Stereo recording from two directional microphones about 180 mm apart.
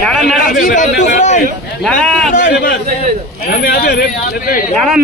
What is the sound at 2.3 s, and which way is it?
Speech, 50° left (ahead or behind).